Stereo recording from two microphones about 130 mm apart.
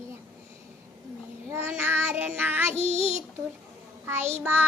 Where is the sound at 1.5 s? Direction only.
20° right (ahead or behind).